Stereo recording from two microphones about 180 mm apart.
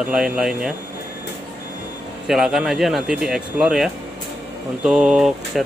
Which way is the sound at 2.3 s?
Centre (ahead or behind).